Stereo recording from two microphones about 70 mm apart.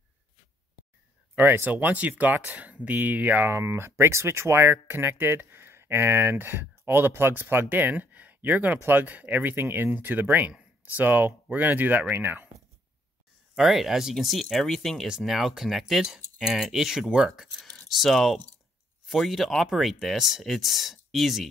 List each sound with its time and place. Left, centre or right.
1.3 s speech: right
13.6 s speech: centre
15.0 s speech: centre
17.6 s a sound: centre
17.8 s speech: centre